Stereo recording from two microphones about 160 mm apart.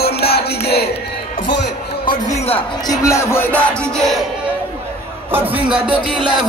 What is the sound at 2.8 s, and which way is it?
Music, 20° left (ahead or behind).